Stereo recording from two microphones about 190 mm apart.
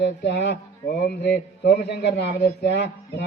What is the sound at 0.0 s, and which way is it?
A man's voice, 70° left (ahead or behind).